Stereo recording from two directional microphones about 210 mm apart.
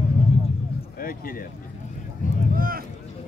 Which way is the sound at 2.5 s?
45° right (ahead or behind).